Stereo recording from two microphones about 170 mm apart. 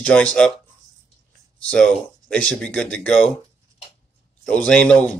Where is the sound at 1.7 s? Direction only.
5° left (ahead or behind).